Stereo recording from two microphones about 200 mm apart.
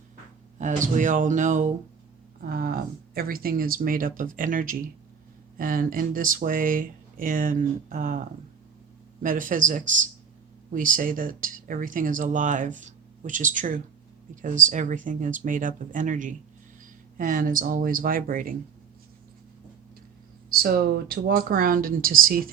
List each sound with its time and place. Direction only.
0.6 s speech: 40° right (ahead or behind)
9.2 s speech: 40° right (ahead or behind)
20.5 s speech: 45° right (ahead or behind)